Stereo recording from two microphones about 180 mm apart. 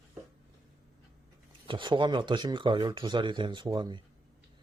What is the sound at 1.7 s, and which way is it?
Speech, 25° right (ahead or behind).